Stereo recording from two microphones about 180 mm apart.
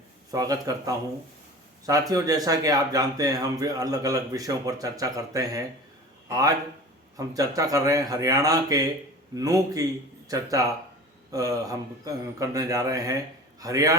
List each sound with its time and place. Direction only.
0.3 s speech: 20° right (ahead or behind)